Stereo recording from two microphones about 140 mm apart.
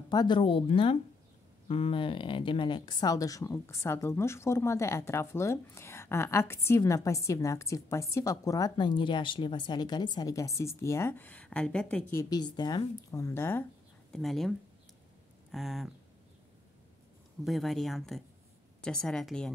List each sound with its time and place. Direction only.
0.1 s speech: 30° left (ahead or behind); by 12.0 s 5° left (ahead or behind)
12.1 s speech: 25° left (ahead or behind)
14.1 s speech: centre (ahead or behind)
15.5 s speech: centre (ahead or behind)
17.5 s speech: centre (ahead or behind)